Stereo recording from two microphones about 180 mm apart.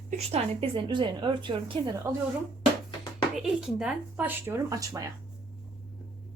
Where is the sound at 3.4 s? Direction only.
5° right (ahead or behind).